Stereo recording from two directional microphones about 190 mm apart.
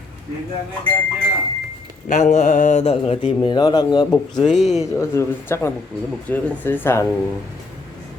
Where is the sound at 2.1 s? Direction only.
40° left (ahead or behind); by 4.1 s 20° left (ahead or behind).